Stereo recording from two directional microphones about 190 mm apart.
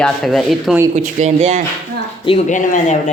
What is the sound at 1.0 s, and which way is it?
Speech, 35° right (ahead or behind).